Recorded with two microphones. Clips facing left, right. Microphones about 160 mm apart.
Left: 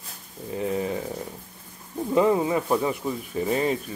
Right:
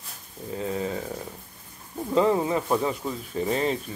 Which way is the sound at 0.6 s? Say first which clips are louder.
Left 2 dB; 15° left (ahead or behind).